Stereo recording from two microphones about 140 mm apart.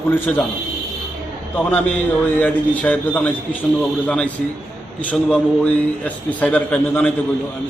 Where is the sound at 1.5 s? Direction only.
10° left (ahead or behind).